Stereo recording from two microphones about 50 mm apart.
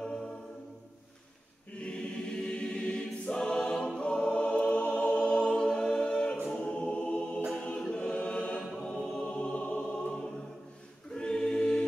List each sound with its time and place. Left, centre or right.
0.0 s choir: centre
1.8 s choir: left
7.5 s a capella: centre
8.5 s choir: centre
11.1 s a capella: centre